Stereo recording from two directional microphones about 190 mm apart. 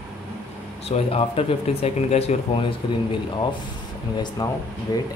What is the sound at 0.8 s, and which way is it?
A man's voice, 30° left (ahead or behind).